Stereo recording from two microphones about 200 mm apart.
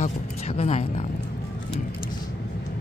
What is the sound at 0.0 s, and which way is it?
Speech, 30° left (ahead or behind).